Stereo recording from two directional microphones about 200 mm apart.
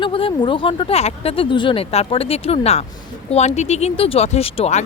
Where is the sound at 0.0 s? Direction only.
25° left (ahead or behind).